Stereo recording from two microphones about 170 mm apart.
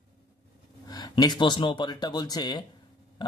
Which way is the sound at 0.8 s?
25° left (ahead or behind).